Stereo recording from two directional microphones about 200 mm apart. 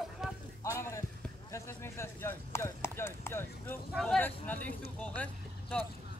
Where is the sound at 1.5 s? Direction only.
15° left (ahead or behind).